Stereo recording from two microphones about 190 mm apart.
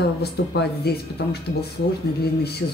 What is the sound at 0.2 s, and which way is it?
Speech, 60° left (ahead or behind).